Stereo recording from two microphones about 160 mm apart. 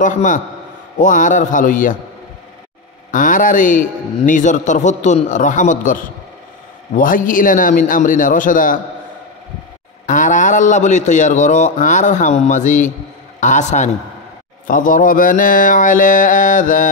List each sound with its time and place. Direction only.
0.0 s a man's voice: 50° left (ahead or behind)
0.9 s mantra: 55° left (ahead or behind)
3.1 s a man's voice: 55° left (ahead or behind)
7.0 s mantra: 60° left (ahead or behind)
10.0 s a man's voice: 50° left (ahead or behind)
14.7 s mantra: 55° left (ahead or behind)